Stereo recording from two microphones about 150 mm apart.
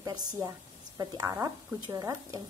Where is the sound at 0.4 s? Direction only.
25° right (ahead or behind).